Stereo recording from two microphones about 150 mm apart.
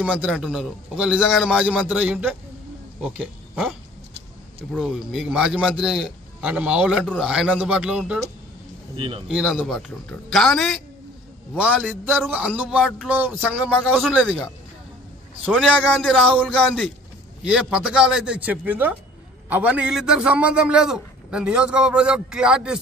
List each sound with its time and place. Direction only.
0.0 s a man's voice: 10° right (ahead or behind)
4.7 s a man's voice: 5° right (ahead or behind)
8.9 s speech: 35° right (ahead or behind)
9.3 s a man's voice: centre (ahead or behind)
13.8 s a man's voice: centre (ahead or behind)
15.5 s a man's voice: 5° right (ahead or behind)